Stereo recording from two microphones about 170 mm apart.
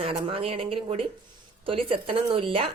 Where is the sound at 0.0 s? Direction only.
35° right (ahead or behind).